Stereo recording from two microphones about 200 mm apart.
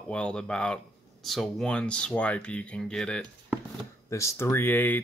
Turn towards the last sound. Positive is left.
turn(degrees=10)  # may be behind; listen again after turning